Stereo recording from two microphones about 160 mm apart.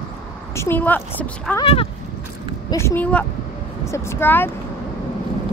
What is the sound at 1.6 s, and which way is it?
Speech, 35° left (ahead or behind).